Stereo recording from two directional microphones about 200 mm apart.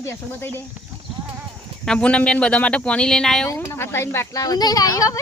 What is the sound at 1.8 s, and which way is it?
Speech, 5° left (ahead or behind).